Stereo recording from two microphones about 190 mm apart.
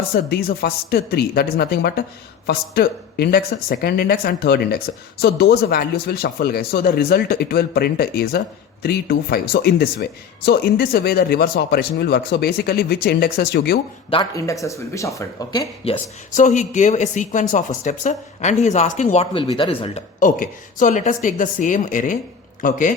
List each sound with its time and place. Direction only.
0.3 s speech: 55° left (ahead or behind)
14.1 s speech: 20° left (ahead or behind)
15.8 s speech: 35° left (ahead or behind)
20.1 s a woman's voice: 45° left (ahead or behind)